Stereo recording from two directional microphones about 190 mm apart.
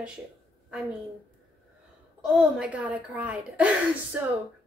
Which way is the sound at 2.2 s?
5° right (ahead or behind).